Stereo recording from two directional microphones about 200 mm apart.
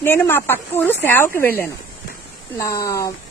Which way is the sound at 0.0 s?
10° left (ahead or behind).